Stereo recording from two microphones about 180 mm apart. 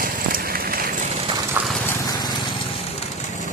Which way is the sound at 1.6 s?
10° right (ahead or behind).